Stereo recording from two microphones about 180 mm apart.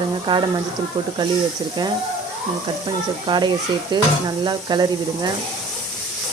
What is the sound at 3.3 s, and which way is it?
Stir, 25° right (ahead or behind).